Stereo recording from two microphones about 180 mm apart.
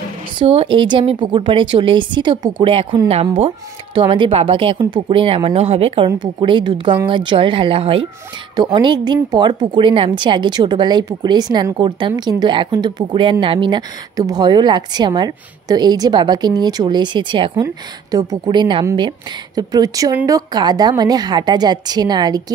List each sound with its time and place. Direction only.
0.4 s speech: 30° right (ahead or behind)